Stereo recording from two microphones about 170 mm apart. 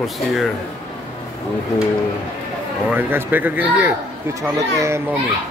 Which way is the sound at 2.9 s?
10° right (ahead or behind).